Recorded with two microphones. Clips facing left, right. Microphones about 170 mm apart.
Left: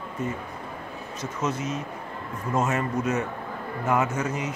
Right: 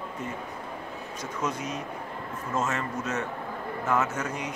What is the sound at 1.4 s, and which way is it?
Speech, 5° left (ahead or behind).